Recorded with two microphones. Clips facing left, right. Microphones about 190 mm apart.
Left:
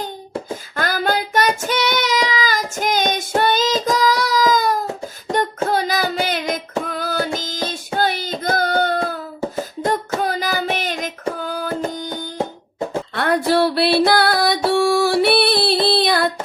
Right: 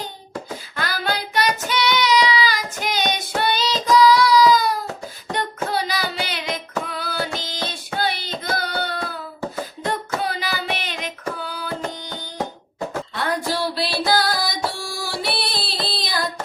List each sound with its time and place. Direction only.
0.5 s child singing: 45° left (ahead or behind)
6.8 s music: 45° left (ahead or behind)
7.9 s hands: 45° left (ahead or behind)
9.6 s beatboxing: 45° left (ahead or behind)
10.2 s child singing: 45° left (ahead or behind)
11.3 s a sound: 45° left (ahead or behind)
13.1 s music: 60° left (ahead or behind)